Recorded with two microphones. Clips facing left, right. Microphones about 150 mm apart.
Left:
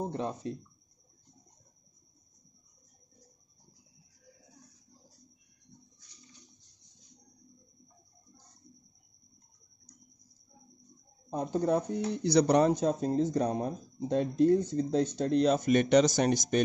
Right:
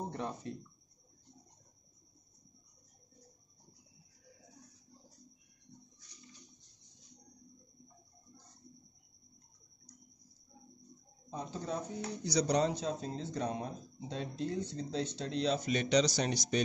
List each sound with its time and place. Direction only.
0.1 s speech: 25° left (ahead or behind)
11.2 s speech: 50° left (ahead or behind)